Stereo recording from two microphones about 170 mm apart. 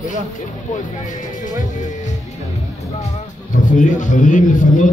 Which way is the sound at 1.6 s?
45° left (ahead or behind).